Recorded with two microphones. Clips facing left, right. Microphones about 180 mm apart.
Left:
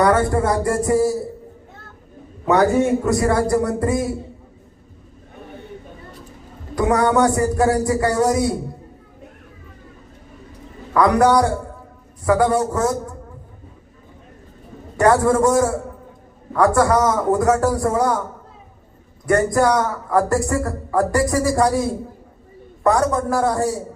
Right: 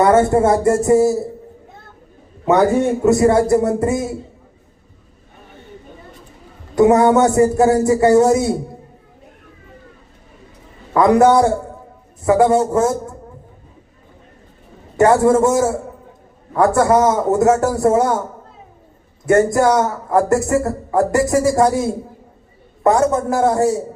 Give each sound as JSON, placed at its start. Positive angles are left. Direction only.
{"t": 0.0, "sound": "a man's voice", "side_deg": -25}
{"t": 3.1, "sound": "a man's voice", "side_deg": -25}
{"t": 6.7, "sound": "a man's voice", "side_deg": -25}
{"t": 10.9, "sound": "a man's voice", "side_deg": -25}
{"t": 14.9, "sound": "a man's voice", "side_deg": -25}
{"t": 19.2, "sound": "a man's voice", "side_deg": -25}